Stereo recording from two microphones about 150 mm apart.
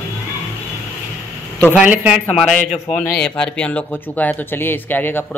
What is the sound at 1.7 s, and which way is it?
A man's voice, 10° right (ahead or behind).